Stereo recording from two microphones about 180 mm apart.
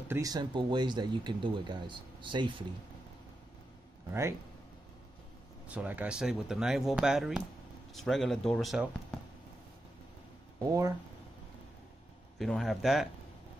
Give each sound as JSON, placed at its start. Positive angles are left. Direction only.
{"t": 0.1, "sound": "speech", "side_deg": -20}
{"t": 4.1, "sound": "speech", "side_deg": -15}
{"t": 5.7, "sound": "speech", "side_deg": -10}
{"t": 12.4, "sound": "speech", "side_deg": 0}